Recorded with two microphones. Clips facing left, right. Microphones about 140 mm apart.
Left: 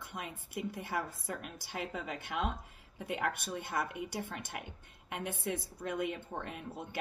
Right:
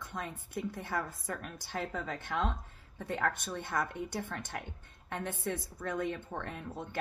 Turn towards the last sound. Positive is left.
turn(degrees=10)  # may be behind; listen again after turning